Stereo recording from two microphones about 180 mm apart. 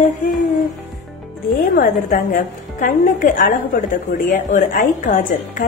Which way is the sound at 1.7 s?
50° left (ahead or behind).